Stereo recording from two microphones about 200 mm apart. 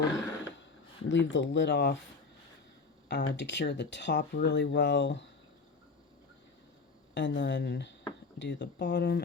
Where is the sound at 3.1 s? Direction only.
60° left (ahead or behind).